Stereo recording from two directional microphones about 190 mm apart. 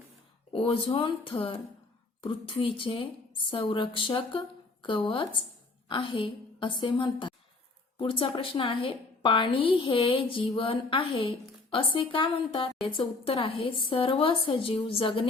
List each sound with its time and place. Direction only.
0.5 s a woman's voice: 30° left (ahead or behind)